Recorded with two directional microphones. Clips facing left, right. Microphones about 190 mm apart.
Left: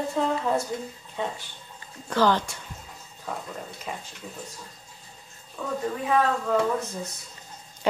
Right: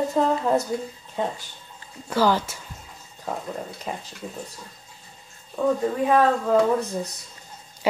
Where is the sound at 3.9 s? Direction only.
40° right (ahead or behind).